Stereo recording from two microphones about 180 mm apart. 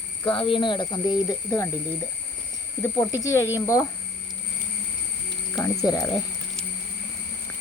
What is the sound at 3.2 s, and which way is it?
Speech, 15° left (ahead or behind).